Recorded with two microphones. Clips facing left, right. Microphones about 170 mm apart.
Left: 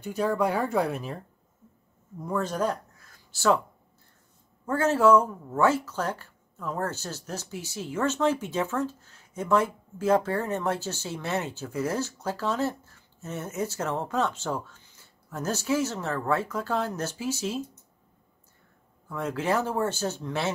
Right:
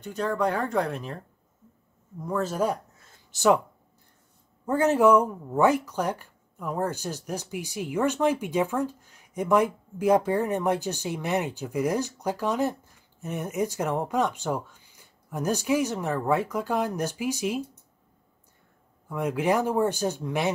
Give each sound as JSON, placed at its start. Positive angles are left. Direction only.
{"t": 0.0, "sound": "speech", "side_deg": 10}
{"t": 2.2, "sound": "speech", "side_deg": 0}
{"t": 3.0, "sound": "a sound", "side_deg": -20}
{"t": 4.6, "sound": "speech", "side_deg": -15}
{"t": 19.0, "sound": "speech", "side_deg": -15}